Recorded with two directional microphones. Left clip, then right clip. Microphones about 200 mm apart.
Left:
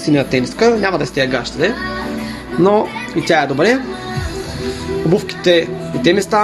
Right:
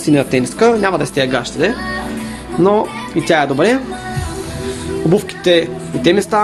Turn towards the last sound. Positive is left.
turn(degrees=-5)  # may be behind; listen again after turning